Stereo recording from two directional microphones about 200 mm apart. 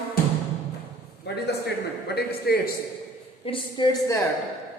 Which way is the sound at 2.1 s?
50° left (ahead or behind).